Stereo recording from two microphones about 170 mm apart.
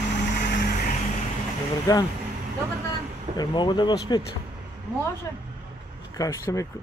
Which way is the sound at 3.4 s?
25° left (ahead or behind).